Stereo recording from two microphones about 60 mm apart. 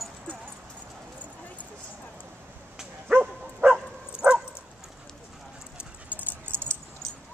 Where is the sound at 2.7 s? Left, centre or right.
Centre.